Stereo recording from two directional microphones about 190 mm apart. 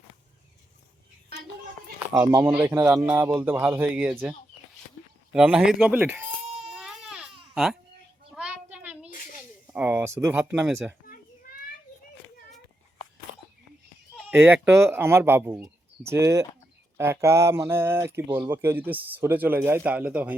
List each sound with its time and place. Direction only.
2.1 s speech: 20° right (ahead or behind)
2.4 s speech: 10° right (ahead or behind)
6.4 s a sound: 35° right (ahead or behind)
6.7 s baby cry: 5° right (ahead or behind)
7.5 s speech: centre (ahead or behind)
8.4 s a sound: 10° right (ahead or behind)
9.7 s speech: 10° right (ahead or behind)
14.3 s speech: 10° right (ahead or behind)